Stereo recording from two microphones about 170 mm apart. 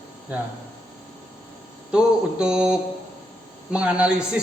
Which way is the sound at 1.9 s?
5° right (ahead or behind).